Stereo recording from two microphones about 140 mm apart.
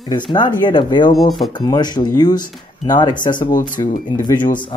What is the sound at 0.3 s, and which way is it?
Speech, 35° left (ahead or behind).